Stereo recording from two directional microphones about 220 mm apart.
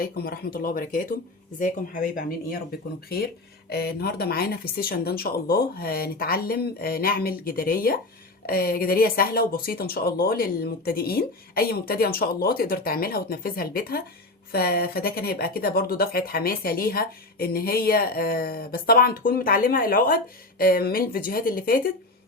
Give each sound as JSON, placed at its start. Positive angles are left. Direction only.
{"t": 0.0, "sound": "speech", "side_deg": 45}
{"t": 3.7, "sound": "speech", "side_deg": 45}